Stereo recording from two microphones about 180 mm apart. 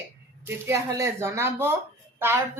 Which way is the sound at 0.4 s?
15° right (ahead or behind).